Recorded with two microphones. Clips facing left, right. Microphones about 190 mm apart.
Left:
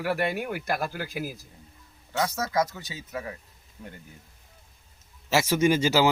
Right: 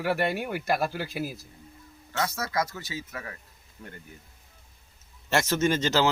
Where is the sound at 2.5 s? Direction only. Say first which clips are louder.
Left 3 dB; 15° left (ahead or behind).